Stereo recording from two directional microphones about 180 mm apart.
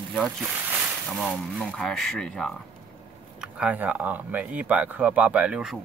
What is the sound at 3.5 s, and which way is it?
Speech, 10° right (ahead or behind).